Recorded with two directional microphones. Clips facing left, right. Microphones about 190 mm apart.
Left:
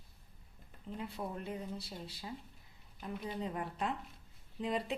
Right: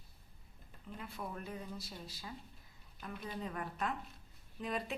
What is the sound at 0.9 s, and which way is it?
A woman's voice, 30° left (ahead or behind).